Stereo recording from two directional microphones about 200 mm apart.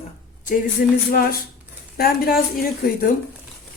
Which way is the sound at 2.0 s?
50° left (ahead or behind).